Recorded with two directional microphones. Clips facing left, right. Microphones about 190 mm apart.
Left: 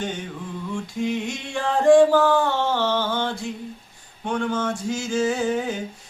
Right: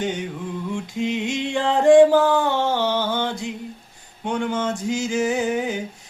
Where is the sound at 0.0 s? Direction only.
15° right (ahead or behind).